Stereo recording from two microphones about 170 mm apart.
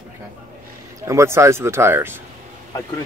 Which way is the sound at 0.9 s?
15° right (ahead or behind).